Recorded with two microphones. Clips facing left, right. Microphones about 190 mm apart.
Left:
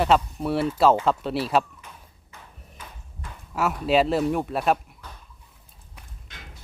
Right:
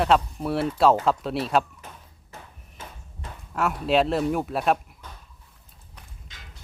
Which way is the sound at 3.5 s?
Centre (ahead or behind).